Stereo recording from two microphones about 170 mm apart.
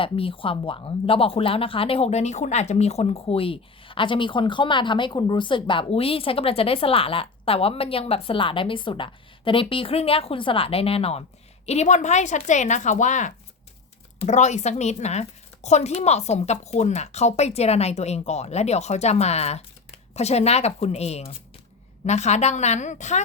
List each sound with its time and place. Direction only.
0.0 s a woman's voice: 30° left (ahead or behind)